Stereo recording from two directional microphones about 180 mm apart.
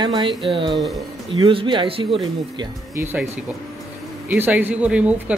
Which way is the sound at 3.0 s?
10° right (ahead or behind).